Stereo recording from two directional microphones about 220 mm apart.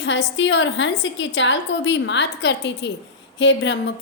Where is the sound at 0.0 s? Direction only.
55° left (ahead or behind).